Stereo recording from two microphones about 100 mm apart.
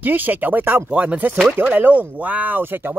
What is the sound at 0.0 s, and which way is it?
Speech, 20° right (ahead or behind).